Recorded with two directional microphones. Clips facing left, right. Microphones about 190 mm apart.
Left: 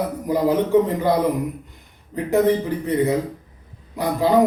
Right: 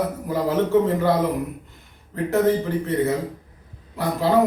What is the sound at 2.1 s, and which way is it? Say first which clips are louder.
A man's voice: left 2 dB; 15° left (ahead or behind).